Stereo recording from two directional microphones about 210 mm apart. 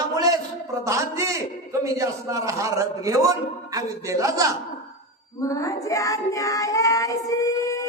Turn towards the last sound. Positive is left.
turn(degrees=15)  # may be behind; listen again after turning